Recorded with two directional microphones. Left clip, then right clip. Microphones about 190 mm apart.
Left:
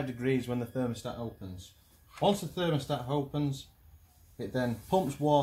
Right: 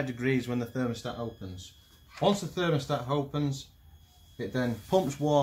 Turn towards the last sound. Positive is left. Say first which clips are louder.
# right 1 dB
turn(degrees=-15)  # may be behind; listen again after turning